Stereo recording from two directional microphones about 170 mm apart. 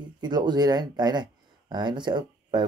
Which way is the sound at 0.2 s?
25° right (ahead or behind).